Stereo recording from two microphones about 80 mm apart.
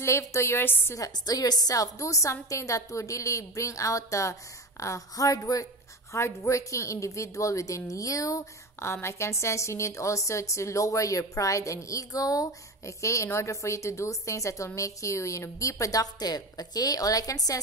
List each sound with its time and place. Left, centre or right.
0.0 s a woman's voice: left
0.9 s a woman's voice: left